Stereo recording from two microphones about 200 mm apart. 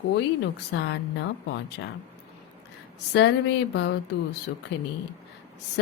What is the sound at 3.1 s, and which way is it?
Speech, 60° left (ahead or behind).